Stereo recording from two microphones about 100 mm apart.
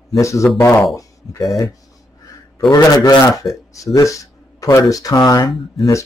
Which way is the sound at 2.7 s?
40° left (ahead or behind).